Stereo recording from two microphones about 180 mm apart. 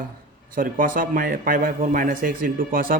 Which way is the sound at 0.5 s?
50° right (ahead or behind).